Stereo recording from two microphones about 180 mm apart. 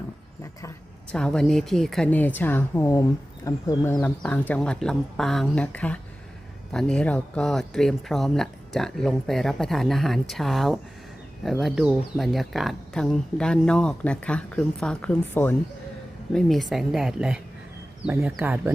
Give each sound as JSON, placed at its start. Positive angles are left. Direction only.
{"t": 1.1, "sound": "speech", "side_deg": 5}
{"t": 4.0, "sound": "speech", "side_deg": 10}